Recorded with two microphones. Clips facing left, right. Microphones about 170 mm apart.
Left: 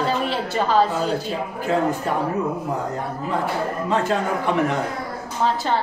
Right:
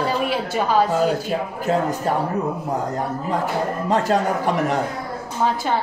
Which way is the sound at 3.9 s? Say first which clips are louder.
Right 3 dB; 40° right (ahead or behind).